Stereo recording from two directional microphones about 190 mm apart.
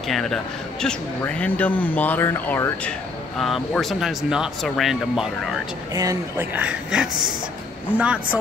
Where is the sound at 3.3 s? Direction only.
Centre (ahead or behind).